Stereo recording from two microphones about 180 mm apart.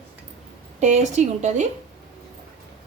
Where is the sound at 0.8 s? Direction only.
40° right (ahead or behind).